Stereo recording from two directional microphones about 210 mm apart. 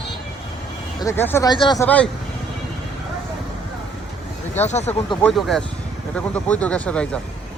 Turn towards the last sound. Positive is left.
turn(degrees=5)  # may be behind; listen again after turning